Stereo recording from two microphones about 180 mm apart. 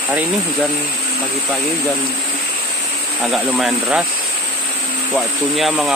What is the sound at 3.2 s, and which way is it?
Speech, centre (ahead or behind).